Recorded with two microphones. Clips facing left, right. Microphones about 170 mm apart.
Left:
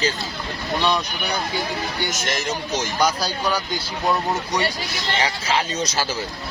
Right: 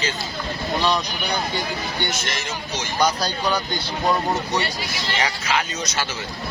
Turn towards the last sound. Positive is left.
turn(degrees=30)  # may be behind; listen again after turning